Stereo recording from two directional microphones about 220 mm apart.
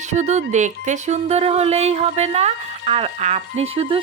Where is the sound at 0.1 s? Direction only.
30° right (ahead or behind).